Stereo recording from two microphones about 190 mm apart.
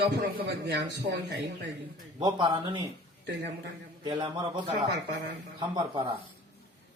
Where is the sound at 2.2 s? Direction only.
25° right (ahead or behind).